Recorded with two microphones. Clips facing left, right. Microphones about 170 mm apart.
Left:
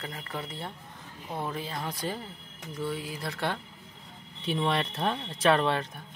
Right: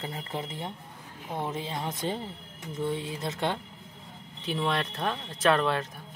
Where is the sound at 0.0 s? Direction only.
25° right (ahead or behind).